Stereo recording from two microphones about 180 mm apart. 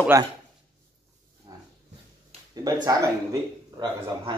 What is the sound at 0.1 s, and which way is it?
Speech, 15° right (ahead or behind).